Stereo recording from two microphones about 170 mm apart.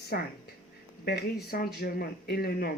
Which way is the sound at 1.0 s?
65° left (ahead or behind).